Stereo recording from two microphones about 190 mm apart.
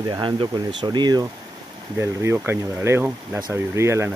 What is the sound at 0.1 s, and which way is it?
Speech, 25° right (ahead or behind).